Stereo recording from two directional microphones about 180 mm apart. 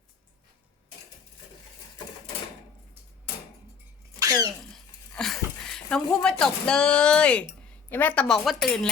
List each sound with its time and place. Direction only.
4.2 s sneeze: 20° right (ahead or behind)
5.1 s a woman's voice: 5° left (ahead or behind)